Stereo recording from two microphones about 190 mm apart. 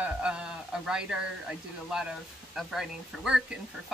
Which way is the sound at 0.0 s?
5° right (ahead or behind).